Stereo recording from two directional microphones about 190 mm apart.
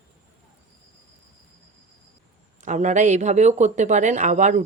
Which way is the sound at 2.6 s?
40° right (ahead or behind).